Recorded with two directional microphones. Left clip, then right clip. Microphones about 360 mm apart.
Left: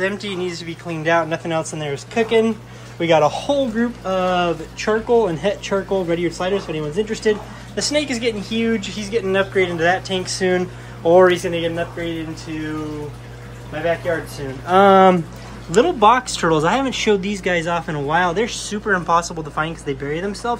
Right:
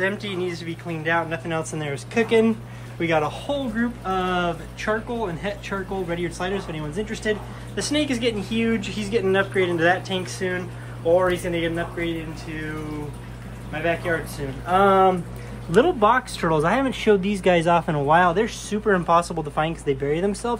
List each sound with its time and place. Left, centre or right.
0.0 s speech: centre
14.7 s speech: left
15.7 s speech: centre